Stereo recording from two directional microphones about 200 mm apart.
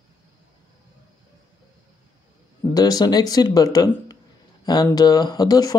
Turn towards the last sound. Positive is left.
turn(degrees=20)  # may be behind; listen again after turning